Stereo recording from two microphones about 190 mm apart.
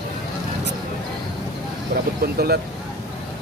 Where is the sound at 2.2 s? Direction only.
55° right (ahead or behind).